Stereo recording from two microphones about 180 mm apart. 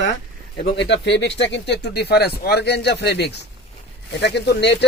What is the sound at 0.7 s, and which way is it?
Speech, 75° left (ahead or behind).